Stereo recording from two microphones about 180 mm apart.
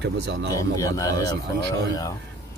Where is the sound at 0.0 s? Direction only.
70° right (ahead or behind).